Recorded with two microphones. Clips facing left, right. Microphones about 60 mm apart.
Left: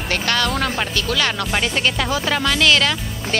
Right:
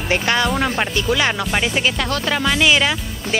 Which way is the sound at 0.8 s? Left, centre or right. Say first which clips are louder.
Right 2 dB; centre.